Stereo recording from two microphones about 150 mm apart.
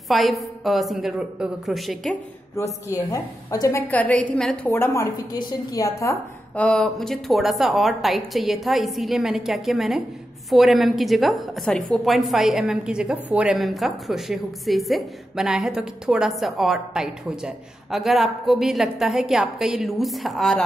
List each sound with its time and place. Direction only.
0.1 s a woman's voice: centre (ahead or behind)
2.5 s a woman's voice: 20° left (ahead or behind)
3.8 s a woman's voice: 10° left (ahead or behind)
4.6 s a woman's voice: 15° left (ahead or behind)
6.5 s a woman's voice: 5° left (ahead or behind)